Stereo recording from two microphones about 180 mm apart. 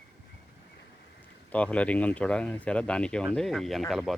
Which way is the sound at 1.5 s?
5° left (ahead or behind).